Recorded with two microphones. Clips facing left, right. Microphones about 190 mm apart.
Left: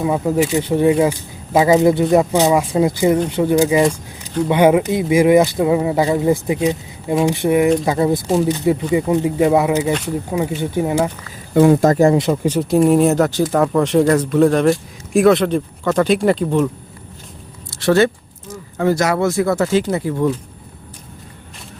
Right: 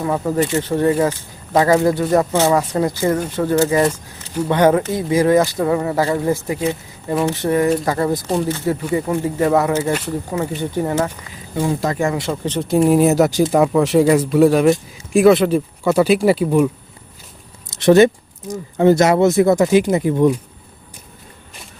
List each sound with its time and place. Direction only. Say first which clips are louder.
0.0 s speech: left 2 dB; 10° left (ahead or behind)
11.5 s speech: left 9 dB; 70° left (ahead or behind)
11.8 s speech: left 7 dB; 40° left (ahead or behind)
12.3 s a man's voice: left 3 dB; 5° left (ahead or behind)
17.7 s a sound: right 4 dB; 20° right (ahead or behind)
18.8 s speech: right 4 dB; 25° right (ahead or behind)